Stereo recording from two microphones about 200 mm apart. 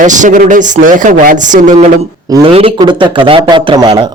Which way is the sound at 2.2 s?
20° right (ahead or behind).